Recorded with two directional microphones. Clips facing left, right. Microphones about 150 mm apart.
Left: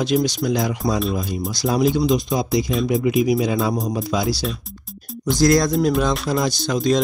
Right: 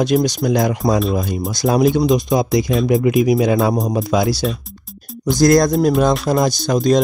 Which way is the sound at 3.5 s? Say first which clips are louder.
Right 5 dB; 70° right (ahead or behind).